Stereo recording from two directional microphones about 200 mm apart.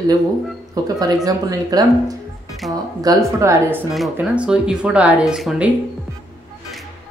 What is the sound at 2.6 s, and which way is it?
Speech, centre (ahead or behind).